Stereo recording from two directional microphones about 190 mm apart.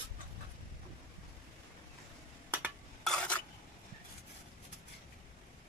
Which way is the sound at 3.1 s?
5° left (ahead or behind).